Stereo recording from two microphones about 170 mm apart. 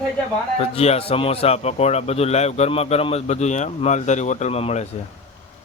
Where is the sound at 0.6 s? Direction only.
35° left (ahead or behind).